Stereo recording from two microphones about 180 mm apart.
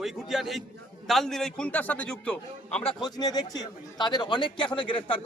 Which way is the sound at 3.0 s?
20° left (ahead or behind).